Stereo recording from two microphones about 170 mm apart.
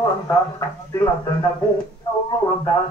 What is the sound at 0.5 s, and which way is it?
Speech, 20° left (ahead or behind).